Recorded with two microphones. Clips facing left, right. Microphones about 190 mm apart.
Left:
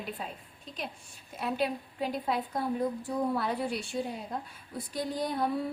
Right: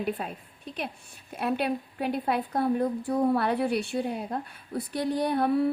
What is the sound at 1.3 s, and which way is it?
A woman's voice, 60° right (ahead or behind).